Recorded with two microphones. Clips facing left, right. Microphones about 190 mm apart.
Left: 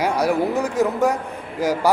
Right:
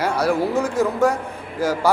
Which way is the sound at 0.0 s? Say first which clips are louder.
Even; 15° left (ahead or behind).